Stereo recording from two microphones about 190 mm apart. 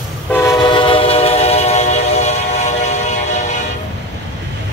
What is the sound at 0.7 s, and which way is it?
Train, 30° left (ahead or behind).